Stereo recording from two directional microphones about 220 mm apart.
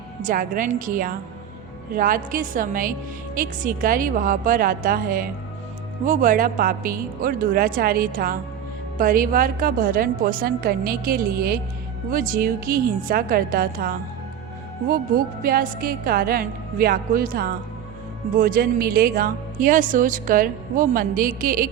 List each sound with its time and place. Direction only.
0.2 s speech: 35° right (ahead or behind)